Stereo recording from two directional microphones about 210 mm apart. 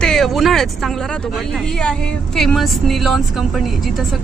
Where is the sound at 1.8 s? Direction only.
Centre (ahead or behind).